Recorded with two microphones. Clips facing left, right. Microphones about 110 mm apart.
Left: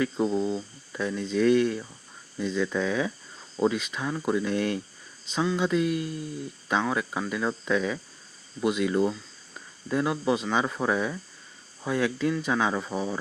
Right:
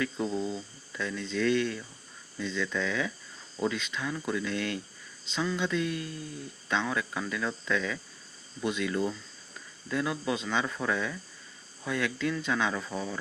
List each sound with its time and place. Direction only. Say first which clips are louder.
0.0 s speech: left 5 dB; 25° left (ahead or behind)